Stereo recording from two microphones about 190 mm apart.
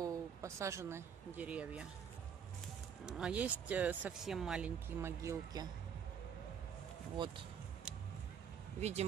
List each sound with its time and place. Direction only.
0.0 s speech: 15° right (ahead or behind)
3.1 s speech: 5° right (ahead or behind)
7.2 s speech: 25° right (ahead or behind)